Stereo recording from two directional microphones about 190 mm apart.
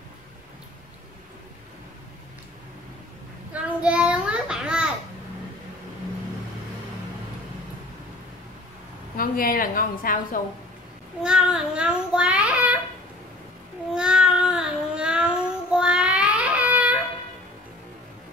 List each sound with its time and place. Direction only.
3.5 s a sound: 5° right (ahead or behind)
9.1 s a woman's voice: 50° left (ahead or behind)
11.2 s child singing: 5° right (ahead or behind)
13.9 s child singing: 5° right (ahead or behind)